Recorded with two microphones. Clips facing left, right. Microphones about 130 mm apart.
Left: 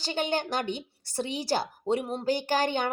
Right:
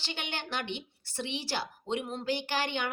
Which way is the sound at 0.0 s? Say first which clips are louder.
Left 10 dB; 40° left (ahead or behind).